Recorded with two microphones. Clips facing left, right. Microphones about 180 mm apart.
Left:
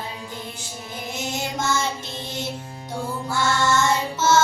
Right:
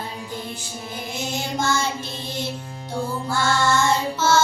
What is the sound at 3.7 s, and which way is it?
Child singing, 20° left (ahead or behind).